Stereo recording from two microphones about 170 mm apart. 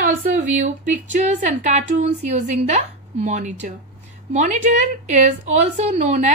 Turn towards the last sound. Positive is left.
turn(degrees=-40)  # may be behind; listen again after turning